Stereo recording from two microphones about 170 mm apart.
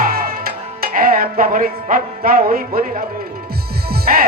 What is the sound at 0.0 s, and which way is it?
Music, 60° right (ahead or behind).